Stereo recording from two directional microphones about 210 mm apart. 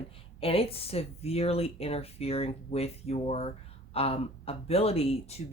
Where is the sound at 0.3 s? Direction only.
25° left (ahead or behind).